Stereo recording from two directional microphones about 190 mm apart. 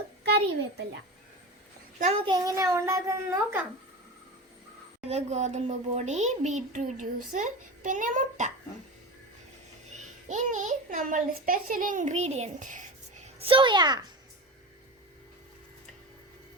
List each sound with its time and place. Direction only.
2.0 s a child's voice: 35° right (ahead or behind)
2.2 s a child's voice: 20° right (ahead or behind)
4.9 s a child's voice: 35° right (ahead or behind)
10.2 s a child's voice: 40° right (ahead or behind); by 14.0 s 20° right (ahead or behind)